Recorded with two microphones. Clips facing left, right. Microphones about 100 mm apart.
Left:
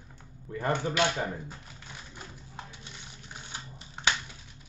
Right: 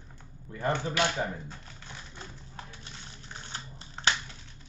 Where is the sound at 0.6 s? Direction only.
15° left (ahead or behind).